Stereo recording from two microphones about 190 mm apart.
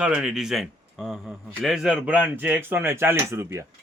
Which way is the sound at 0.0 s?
5° right (ahead or behind).